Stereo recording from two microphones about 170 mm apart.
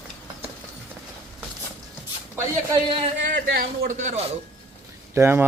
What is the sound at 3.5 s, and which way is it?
Speech, 65° right (ahead or behind).